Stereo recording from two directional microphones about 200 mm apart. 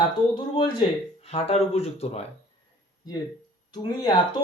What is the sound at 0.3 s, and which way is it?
Speech, 20° left (ahead or behind).